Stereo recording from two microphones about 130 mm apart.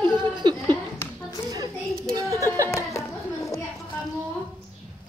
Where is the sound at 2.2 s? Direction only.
25° right (ahead or behind).